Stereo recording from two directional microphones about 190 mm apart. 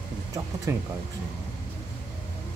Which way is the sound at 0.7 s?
15° right (ahead or behind).